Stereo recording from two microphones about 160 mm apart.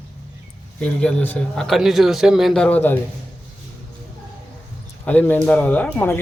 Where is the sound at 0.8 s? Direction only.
5° left (ahead or behind).